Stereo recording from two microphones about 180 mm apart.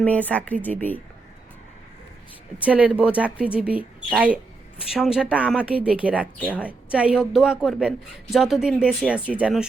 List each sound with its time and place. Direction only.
0.0 s speech: 10° left (ahead or behind)
2.6 s speech: 5° right (ahead or behind)